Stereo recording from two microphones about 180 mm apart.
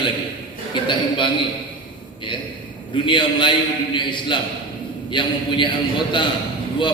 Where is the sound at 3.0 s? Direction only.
25° left (ahead or behind).